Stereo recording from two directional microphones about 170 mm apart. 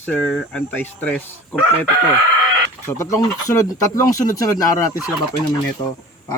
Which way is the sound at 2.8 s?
15° left (ahead or behind).